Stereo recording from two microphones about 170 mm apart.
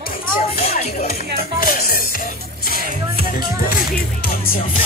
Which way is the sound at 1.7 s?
60° left (ahead or behind).